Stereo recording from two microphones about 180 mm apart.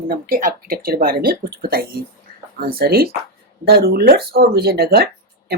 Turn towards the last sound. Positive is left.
turn(degrees=-60)  # may be behind; listen again after turning